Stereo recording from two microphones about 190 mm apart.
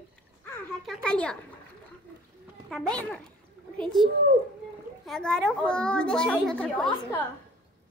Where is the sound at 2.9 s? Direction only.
5° left (ahead or behind).